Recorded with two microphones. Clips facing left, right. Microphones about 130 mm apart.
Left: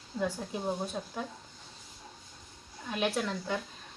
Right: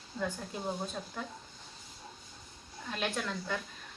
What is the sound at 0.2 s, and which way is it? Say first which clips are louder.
Speech: left 3 dB; 15° left (ahead or behind).